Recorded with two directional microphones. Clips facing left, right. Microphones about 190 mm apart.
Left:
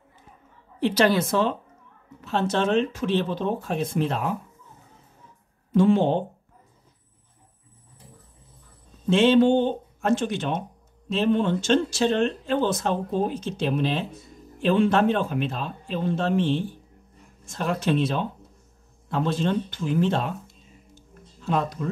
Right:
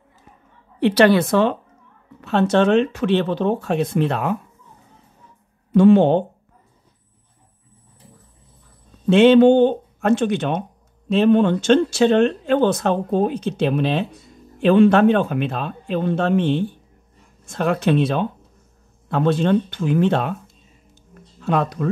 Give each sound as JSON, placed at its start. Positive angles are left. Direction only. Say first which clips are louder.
{"t": 0.7, "sound": "speech", "louder": "right 6 dB", "side_deg": -65}
{"t": 5.7, "sound": "speech", "louder": "right 7 dB", "side_deg": -65}
{"t": 9.0, "sound": "speech", "louder": "right 7 dB", "side_deg": -65}
{"t": 20.9, "sound": "music", "louder": "right 5 dB", "side_deg": -65}